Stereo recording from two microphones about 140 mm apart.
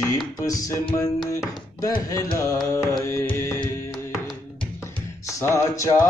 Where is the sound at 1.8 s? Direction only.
20° left (ahead or behind).